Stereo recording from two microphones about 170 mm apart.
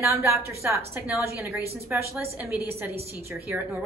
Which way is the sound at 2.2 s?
10° right (ahead or behind).